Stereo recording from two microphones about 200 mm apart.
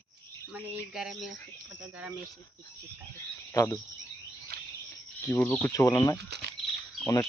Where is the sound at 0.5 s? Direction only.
Centre (ahead or behind).